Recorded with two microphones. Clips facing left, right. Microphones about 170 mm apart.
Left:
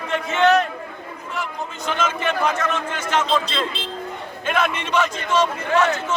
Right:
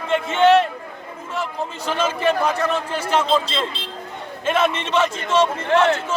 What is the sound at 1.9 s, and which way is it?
A man's voice, 35° right (ahead or behind).